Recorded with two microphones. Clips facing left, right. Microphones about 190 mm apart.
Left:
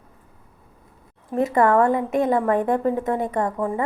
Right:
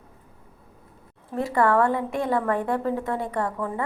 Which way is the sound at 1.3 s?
20° left (ahead or behind).